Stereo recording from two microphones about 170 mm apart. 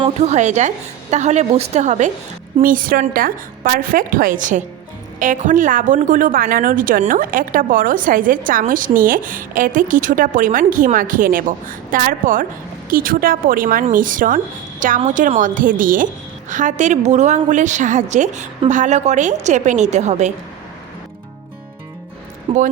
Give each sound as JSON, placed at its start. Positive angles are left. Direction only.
{"t": 0.2, "sound": "a woman's voice", "side_deg": -45}
{"t": 2.6, "sound": "a woman's voice", "side_deg": -55}
{"t": 22.5, "sound": "a woman's voice", "side_deg": -30}